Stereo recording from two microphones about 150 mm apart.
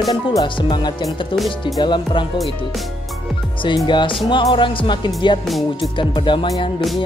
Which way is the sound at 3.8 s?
30° left (ahead or behind).